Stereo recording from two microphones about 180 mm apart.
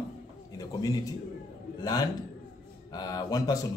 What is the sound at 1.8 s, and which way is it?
A man's voice, 20° left (ahead or behind).